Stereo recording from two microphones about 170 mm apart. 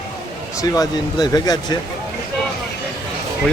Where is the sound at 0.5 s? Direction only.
20° left (ahead or behind).